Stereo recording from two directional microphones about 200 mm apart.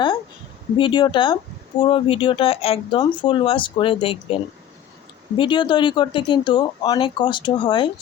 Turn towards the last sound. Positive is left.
turn(degrees=25)  # may be behind; listen again after turning